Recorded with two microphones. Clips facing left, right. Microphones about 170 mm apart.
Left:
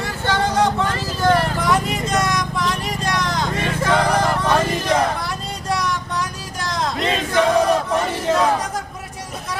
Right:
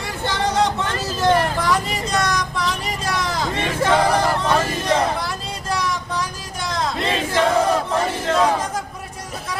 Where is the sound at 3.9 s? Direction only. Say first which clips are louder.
Even; 5° right (ahead or behind).